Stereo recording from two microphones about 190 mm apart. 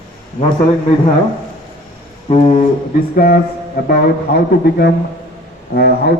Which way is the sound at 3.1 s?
50° left (ahead or behind).